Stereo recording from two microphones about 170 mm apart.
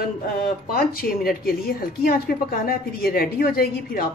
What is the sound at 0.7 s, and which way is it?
A woman's voice, 55° left (ahead or behind).